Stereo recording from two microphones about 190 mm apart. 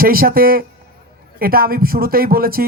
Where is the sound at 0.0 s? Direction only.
50° right (ahead or behind).